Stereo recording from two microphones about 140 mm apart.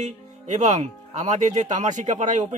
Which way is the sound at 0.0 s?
55° right (ahead or behind).